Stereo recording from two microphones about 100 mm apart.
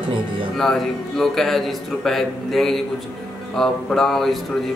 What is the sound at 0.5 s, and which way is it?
A man's voice, 5° left (ahead or behind).